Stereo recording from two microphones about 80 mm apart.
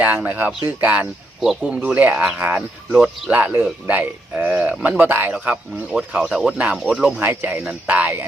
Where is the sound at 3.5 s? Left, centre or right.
Right.